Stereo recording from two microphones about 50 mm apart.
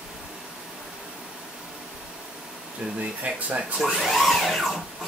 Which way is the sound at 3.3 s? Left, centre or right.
Right.